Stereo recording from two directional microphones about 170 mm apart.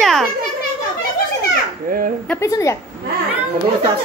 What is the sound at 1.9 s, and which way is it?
Speech, 55° right (ahead or behind).